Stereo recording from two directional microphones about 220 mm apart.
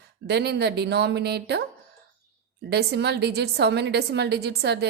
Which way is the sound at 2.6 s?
50° right (ahead or behind).